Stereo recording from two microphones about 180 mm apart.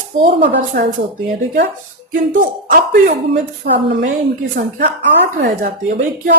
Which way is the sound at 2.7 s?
45° right (ahead or behind).